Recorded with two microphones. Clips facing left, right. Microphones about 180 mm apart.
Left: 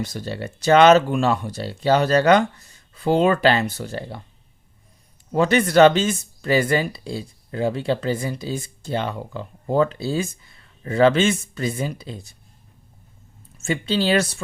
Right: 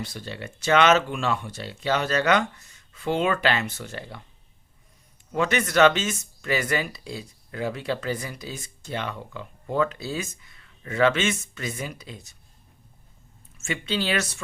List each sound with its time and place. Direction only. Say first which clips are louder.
0.0 s speech: left 6 dB; 40° left (ahead or behind)
5.3 s speech: left 6 dB; 35° left (ahead or behind)
13.6 s speech: left 6 dB; 35° left (ahead or behind)